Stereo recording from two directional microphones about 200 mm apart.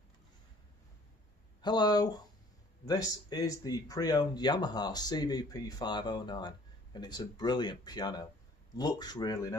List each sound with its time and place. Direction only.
1.6 s speech: 20° left (ahead or behind)